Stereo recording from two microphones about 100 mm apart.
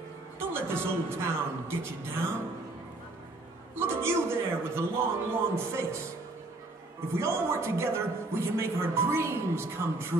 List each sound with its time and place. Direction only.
0.4 s a man's voice: 25° right (ahead or behind)
3.7 s a man's voice: 25° right (ahead or behind)
7.2 s a man's voice: 30° right (ahead or behind)